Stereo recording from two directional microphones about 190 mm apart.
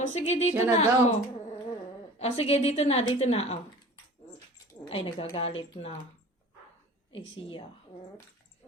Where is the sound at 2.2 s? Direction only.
30° left (ahead or behind).